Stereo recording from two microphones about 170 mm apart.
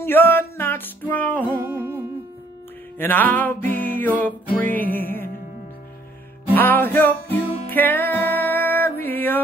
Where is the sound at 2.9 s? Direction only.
10° left (ahead or behind).